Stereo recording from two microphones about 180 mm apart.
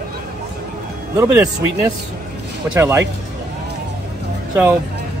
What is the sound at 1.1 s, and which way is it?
Speech, 15° right (ahead or behind).